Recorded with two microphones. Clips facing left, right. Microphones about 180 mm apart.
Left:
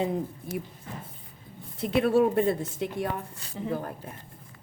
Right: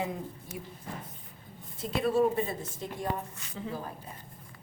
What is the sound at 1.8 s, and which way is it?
A woman's voice, 65° left (ahead or behind).